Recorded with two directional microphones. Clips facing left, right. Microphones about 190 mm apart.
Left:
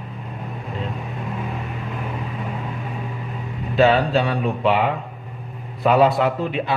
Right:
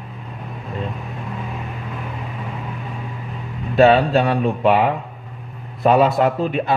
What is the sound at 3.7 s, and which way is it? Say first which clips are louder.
A man's voice: right 3 dB; 50° right (ahead or behind).